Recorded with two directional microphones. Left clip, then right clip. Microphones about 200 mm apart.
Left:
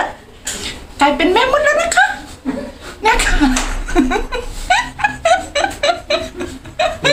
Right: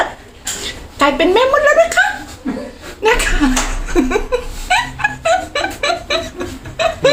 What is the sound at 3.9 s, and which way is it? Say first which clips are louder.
Laughter: right 1 dB; 20° left (ahead or behind).